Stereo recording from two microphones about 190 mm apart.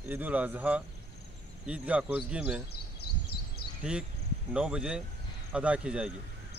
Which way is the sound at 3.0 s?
60° left (ahead or behind).